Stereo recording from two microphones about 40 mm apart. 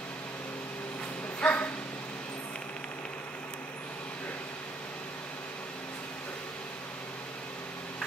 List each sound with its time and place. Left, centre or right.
1.4 s dog: left